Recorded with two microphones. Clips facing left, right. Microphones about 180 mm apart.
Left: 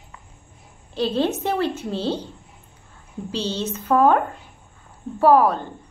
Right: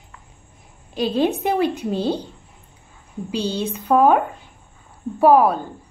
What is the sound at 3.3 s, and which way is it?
Speech, 15° right (ahead or behind).